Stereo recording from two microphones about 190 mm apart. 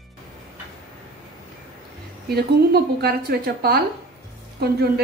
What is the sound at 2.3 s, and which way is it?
A woman's voice, 55° right (ahead or behind).